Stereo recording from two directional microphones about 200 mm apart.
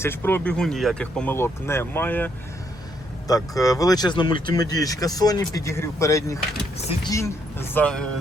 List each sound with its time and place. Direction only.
0.0 s speech: 10° left (ahead or behind)
6.7 s speech: 30° left (ahead or behind)
7.1 s speech: 15° left (ahead or behind)